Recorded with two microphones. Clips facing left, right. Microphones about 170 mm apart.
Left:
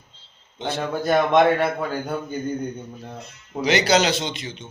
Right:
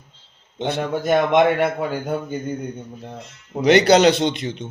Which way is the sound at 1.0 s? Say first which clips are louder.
Right 1 dB; 20° right (ahead or behind).